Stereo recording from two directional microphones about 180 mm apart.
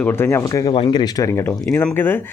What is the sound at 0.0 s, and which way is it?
Speech, 10° left (ahead or behind).